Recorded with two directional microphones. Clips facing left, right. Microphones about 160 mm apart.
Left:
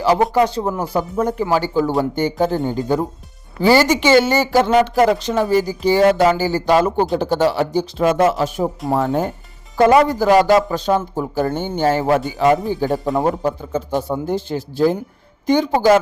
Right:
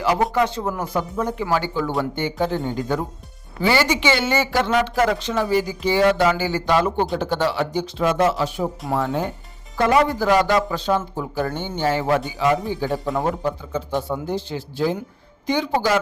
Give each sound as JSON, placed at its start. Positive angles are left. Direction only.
{"t": 0.0, "sound": "speech", "side_deg": 30}
{"t": 1.2, "sound": "speech", "side_deg": 45}
{"t": 1.5, "sound": "speech", "side_deg": 35}
{"t": 8.0, "sound": "speech", "side_deg": 50}